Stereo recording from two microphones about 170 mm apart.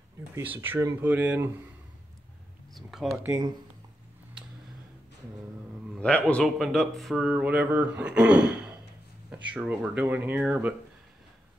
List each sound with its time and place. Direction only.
0.3 s speech: 10° right (ahead or behind)
2.7 s speech: centre (ahead or behind)
3.3 s speech: 20° right (ahead or behind)
5.9 s speech: 5° left (ahead or behind)